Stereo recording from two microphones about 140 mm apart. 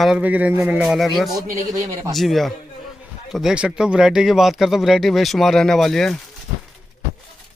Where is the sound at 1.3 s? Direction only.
25° right (ahead or behind).